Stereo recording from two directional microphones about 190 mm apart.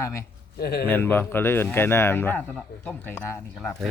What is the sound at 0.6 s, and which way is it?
Speech, 55° left (ahead or behind).